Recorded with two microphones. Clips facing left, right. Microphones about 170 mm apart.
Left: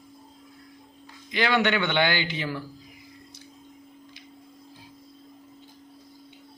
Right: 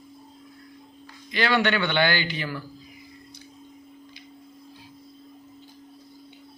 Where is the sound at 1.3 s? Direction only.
20° left (ahead or behind).